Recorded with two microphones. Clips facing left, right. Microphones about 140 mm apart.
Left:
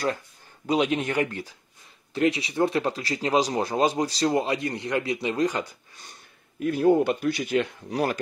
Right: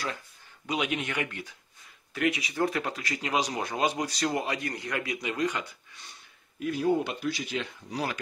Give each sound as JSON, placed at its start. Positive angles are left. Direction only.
{"t": 0.7, "sound": "speech", "side_deg": 35}